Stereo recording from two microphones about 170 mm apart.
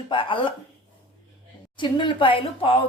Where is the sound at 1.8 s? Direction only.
30° left (ahead or behind).